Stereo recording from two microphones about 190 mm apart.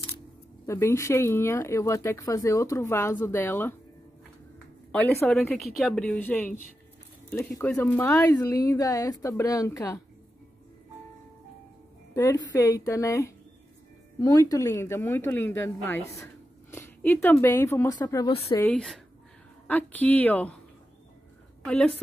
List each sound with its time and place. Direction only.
0.7 s speech: 15° left (ahead or behind)
4.9 s speech: 10° left (ahead or behind)
12.5 s speech: 20° left (ahead or behind)
18.3 s a woman's voice: 30° left (ahead or behind)
18.6 s speech: 5° left (ahead or behind)
21.6 s speech: 5° left (ahead or behind)